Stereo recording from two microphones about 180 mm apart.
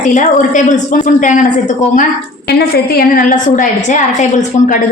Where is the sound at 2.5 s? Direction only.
60° left (ahead or behind); by 4.8 s 45° left (ahead or behind).